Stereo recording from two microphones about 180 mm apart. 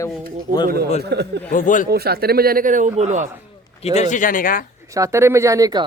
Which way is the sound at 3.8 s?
40° left (ahead or behind).